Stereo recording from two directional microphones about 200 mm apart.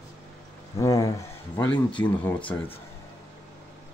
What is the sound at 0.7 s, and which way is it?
Speech, 15° left (ahead or behind).